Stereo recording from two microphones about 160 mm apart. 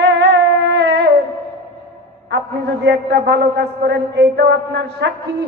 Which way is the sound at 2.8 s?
90° right.